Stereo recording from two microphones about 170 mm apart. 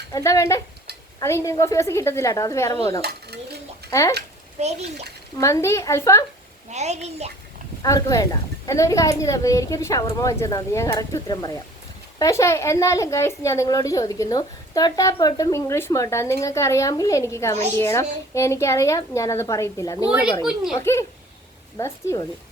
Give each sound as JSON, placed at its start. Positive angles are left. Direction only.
{"t": 0.1, "sound": "a woman's voice", "side_deg": 20}
{"t": 3.0, "sound": "dishes", "side_deg": -70}
{"t": 3.8, "sound": "speech", "side_deg": 20}
{"t": 4.6, "sound": "a woman's voice", "side_deg": -40}
{"t": 5.4, "sound": "a woman's voice", "side_deg": 20}
{"t": 6.7, "sound": "a woman's voice", "side_deg": -40}
{"t": 7.8, "sound": "a woman's voice", "side_deg": 20}
{"t": 20.1, "sound": "a child's voice", "side_deg": -5}
{"t": 20.7, "sound": "a woman's voice", "side_deg": 15}